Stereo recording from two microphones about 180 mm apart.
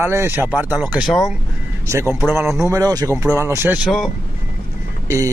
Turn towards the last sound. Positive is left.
turn(degrees=-15)  # may be behind; listen again after turning